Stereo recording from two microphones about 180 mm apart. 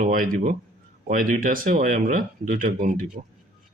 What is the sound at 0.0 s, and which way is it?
A man's voice, 50° right (ahead or behind).